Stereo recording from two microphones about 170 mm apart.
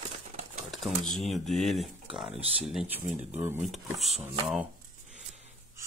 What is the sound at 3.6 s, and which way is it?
Speech, centre (ahead or behind).